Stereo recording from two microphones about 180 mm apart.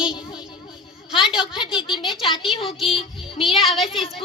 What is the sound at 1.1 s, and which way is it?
Speech, centre (ahead or behind).